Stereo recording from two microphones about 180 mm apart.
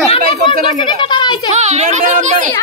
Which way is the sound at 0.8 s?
25° left (ahead or behind).